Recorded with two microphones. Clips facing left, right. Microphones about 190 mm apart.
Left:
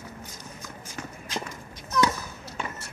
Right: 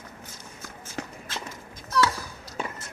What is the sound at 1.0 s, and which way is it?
Run, 70° right (ahead or behind).